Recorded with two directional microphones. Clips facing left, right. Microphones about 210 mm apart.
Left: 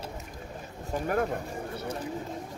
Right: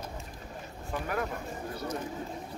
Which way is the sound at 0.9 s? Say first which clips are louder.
Left 5 dB; 40° left (ahead or behind).